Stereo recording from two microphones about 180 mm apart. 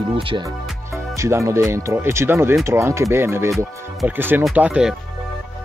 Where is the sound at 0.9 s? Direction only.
15° right (ahead or behind).